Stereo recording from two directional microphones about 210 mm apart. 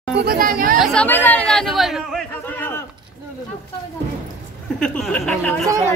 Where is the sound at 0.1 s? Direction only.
45° right (ahead or behind).